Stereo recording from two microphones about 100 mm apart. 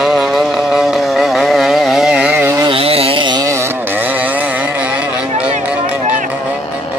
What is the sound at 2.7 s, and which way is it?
Chainsaw, 70° right (ahead or behind).